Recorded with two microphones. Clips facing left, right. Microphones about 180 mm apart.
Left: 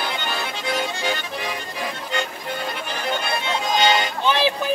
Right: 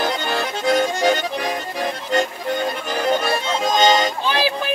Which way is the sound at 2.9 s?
40° right (ahead or behind).